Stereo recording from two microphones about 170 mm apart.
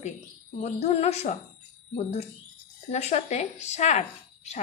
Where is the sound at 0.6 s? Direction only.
35° left (ahead or behind).